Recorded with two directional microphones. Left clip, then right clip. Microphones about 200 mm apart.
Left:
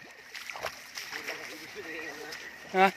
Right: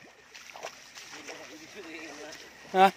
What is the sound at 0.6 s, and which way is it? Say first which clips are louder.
Splash: left 5 dB; 55° left (ahead or behind).